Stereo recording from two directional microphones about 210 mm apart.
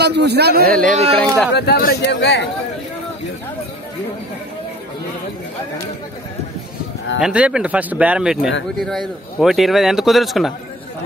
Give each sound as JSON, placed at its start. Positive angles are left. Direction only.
{"t": 0.0, "sound": "a man's voice", "side_deg": -55}
{"t": 0.8, "sound": "speech", "side_deg": -30}
{"t": 1.5, "sound": "speech", "side_deg": 50}
{"t": 7.2, "sound": "a man's voice", "side_deg": -5}